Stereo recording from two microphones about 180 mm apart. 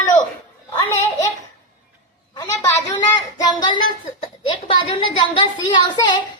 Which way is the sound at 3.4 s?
25° left (ahead or behind).